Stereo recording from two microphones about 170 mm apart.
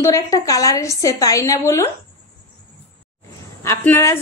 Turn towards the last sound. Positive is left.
turn(degrees=15)  # may be behind; listen again after turning